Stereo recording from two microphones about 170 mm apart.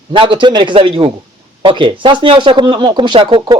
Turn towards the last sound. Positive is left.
turn(degrees=-25)  # may be behind; listen again after turning